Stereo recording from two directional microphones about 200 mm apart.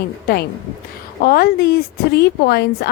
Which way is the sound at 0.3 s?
45° left (ahead or behind).